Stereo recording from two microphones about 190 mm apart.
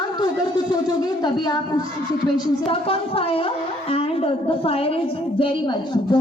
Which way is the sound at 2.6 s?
30° left (ahead or behind).